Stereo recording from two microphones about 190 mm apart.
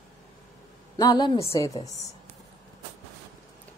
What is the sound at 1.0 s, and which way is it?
Speech, 20° left (ahead or behind).